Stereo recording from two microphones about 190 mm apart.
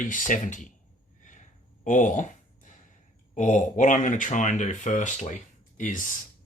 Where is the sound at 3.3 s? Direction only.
40° left (ahead or behind).